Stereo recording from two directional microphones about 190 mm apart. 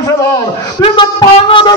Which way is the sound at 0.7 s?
30° left (ahead or behind).